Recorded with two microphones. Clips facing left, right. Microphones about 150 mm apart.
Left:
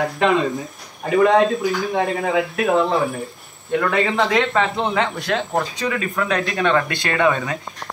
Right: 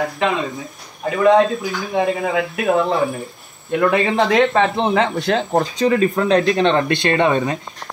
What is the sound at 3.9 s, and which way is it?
Speech, 25° right (ahead or behind).